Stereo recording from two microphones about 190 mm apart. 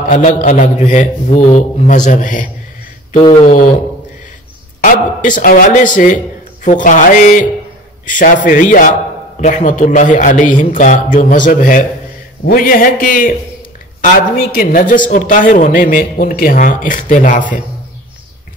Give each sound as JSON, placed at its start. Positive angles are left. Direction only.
{"t": 0.1, "sound": "a man's voice", "side_deg": 40}
{"t": 4.8, "sound": "a man's voice", "side_deg": 45}